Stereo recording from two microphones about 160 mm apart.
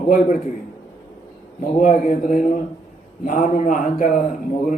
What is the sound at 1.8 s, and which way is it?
A man's voice, 50° left (ahead or behind).